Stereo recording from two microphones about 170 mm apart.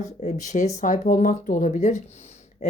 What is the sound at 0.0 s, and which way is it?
Speech, 45° left (ahead or behind).